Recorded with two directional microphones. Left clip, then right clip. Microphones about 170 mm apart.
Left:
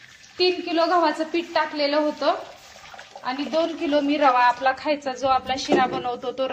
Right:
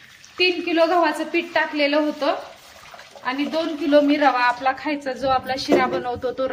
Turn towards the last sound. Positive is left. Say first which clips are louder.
# right 2 dB
turn(degrees=0)  # may be behind; listen again after turning